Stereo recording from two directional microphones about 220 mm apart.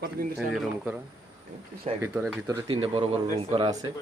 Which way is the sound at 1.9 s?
30° right (ahead or behind).